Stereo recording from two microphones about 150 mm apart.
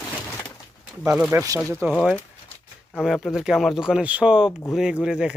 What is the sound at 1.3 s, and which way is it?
Speech, 20° right (ahead or behind).